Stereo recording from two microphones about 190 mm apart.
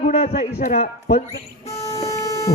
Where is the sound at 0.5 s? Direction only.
55° left (ahead or behind).